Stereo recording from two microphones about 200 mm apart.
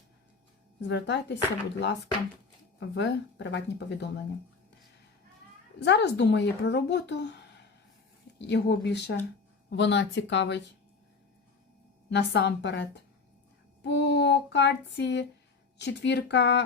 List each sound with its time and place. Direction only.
0.8 s speech: 60° left (ahead or behind)
5.8 s speech: 60° left (ahead or behind)
12.1 s speech: 60° left (ahead or behind)